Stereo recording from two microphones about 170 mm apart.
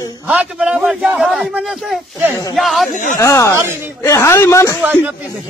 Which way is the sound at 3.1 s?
20° left (ahead or behind).